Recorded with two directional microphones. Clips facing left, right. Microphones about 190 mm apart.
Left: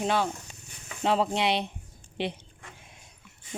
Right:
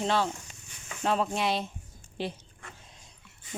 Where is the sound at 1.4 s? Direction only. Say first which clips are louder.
Left 2 dB; 70° left (ahead or behind).